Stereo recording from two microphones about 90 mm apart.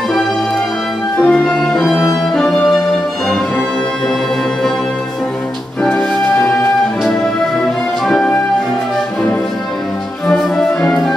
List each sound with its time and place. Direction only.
1.1 s music: 15° left (ahead or behind)
1.6 s music: 5° left (ahead or behind)
5.9 s music: 10° left (ahead or behind)
8.1 s music: 10° left (ahead or behind)
10.2 s music: 10° left (ahead or behind)